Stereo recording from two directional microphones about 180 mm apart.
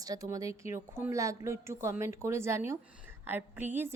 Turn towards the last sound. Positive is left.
turn(degrees=-10)  # may be behind; listen again after turning